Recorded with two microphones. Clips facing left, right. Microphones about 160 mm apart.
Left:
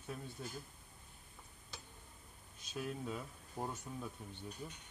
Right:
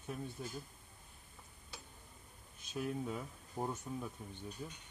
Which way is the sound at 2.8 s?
15° right (ahead or behind).